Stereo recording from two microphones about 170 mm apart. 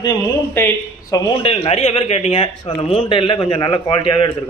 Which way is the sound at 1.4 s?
35° left (ahead or behind).